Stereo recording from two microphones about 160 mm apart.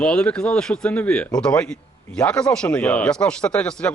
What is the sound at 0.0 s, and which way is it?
Speech, 5° left (ahead or behind).